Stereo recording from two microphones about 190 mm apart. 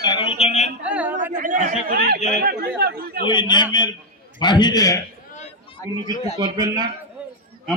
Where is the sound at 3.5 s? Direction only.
25° left (ahead or behind).